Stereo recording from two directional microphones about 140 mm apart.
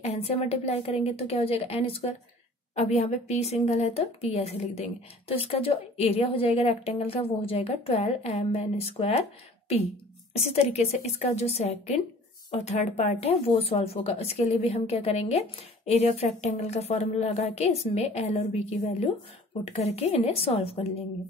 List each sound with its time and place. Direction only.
0.0 s speech: 50° left (ahead or behind)
10.3 s speech: 50° left (ahead or behind)